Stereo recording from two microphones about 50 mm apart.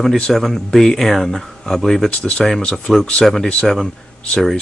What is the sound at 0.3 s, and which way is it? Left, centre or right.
Speech, centre.